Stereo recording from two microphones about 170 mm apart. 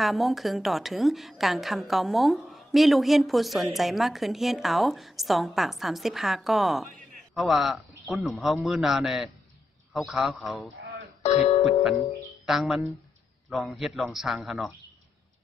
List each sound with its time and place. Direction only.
0.0 s a woman's voice: centre (ahead or behind)
11.2 s music: 40° left (ahead or behind)
12.4 s a woman's voice: centre (ahead or behind)